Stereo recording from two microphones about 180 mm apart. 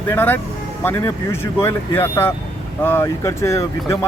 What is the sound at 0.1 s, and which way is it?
Speech, 10° left (ahead or behind).